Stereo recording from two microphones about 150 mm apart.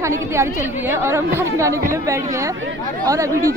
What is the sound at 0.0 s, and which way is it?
A woman's voice, 20° right (ahead or behind).